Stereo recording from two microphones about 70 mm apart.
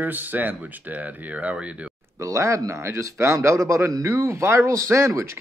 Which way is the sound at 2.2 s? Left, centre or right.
Right.